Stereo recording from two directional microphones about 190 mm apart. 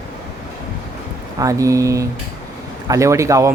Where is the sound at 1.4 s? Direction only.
15° right (ahead or behind).